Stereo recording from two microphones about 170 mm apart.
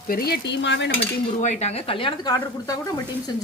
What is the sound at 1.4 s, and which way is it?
Speech, 40° left (ahead or behind).